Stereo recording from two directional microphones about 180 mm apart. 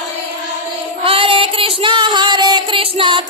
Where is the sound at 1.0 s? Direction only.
30° right (ahead or behind).